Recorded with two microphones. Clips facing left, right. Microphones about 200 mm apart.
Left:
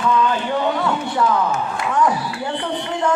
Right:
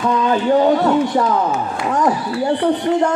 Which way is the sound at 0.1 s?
40° right (ahead or behind).